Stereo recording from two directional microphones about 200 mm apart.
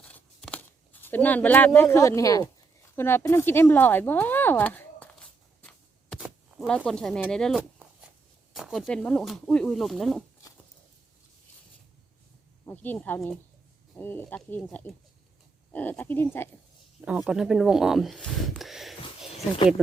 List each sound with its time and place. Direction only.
0.0 s tearing: 5° left (ahead or behind)
1.0 s speech: 10° left (ahead or behind)
2.9 s a sound: 10° left (ahead or behind)
8.5 s speech: centre (ahead or behind)
12.6 s speech: 10° left (ahead or behind)
17.1 s a sound: 5° right (ahead or behind)